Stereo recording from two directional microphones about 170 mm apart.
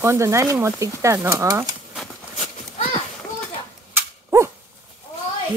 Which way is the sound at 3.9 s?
15° right (ahead or behind).